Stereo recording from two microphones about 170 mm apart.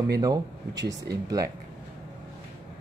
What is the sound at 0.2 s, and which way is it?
Speech, 20° right (ahead or behind).